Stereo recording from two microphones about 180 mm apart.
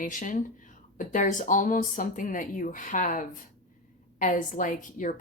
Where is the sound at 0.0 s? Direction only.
45° left (ahead or behind).